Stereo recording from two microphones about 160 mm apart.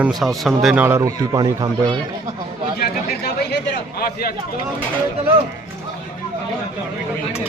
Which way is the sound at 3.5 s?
75° left (ahead or behind).